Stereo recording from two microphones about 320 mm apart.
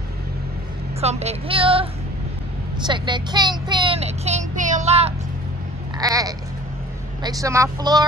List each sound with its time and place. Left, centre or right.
1.0 s a child's voice: centre
5.9 s sheep: centre
7.2 s a child's voice: centre